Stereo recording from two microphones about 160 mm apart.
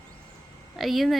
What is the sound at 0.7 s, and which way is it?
Speech, centre (ahead or behind).